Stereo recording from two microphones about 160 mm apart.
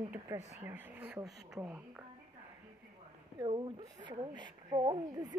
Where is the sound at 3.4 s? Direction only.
30° right (ahead or behind).